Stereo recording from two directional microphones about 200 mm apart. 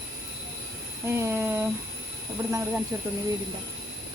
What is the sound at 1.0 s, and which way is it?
Speech, 10° right (ahead or behind).